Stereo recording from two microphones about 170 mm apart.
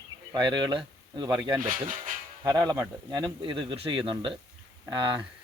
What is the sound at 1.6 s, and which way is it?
Speech, 50° right (ahead or behind).